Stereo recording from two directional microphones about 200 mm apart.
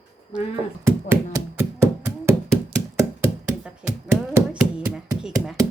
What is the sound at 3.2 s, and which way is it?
Hands, 5° right (ahead or behind).